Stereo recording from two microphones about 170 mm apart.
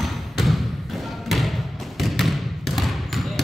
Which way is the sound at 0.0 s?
Centre (ahead or behind).